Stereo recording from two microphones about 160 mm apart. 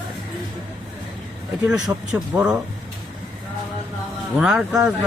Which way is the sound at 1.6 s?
10° right (ahead or behind).